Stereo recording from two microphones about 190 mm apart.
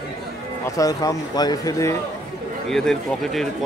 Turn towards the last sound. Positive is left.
turn(degrees=0)  # may be behind; listen again after turning